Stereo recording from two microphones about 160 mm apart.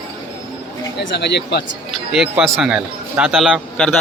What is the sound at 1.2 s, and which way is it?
Speech, 90° left.